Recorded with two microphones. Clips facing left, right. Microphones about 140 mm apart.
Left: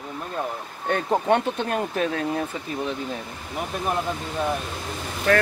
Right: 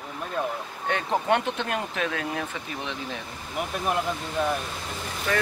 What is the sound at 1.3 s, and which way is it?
Speech, 40° left (ahead or behind).